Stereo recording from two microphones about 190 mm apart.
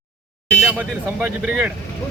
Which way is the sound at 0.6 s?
10° right (ahead or behind).